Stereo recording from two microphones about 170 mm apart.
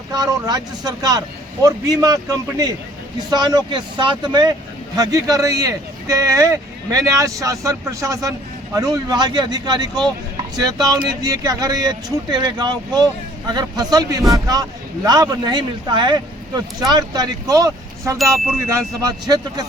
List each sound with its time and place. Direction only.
0.1 s speech: 25° right (ahead or behind)